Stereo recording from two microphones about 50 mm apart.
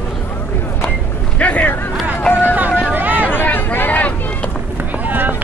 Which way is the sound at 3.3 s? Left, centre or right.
Left.